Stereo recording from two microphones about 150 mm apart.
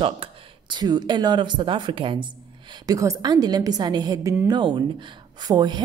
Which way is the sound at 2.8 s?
25° right (ahead or behind).